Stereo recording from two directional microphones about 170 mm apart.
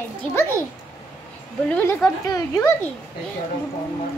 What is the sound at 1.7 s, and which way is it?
Speech, 5° left (ahead or behind).